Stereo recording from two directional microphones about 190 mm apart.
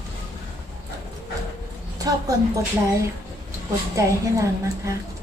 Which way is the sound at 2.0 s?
20° right (ahead or behind).